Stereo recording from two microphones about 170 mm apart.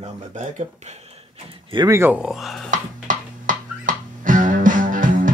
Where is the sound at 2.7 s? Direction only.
50° right (ahead or behind).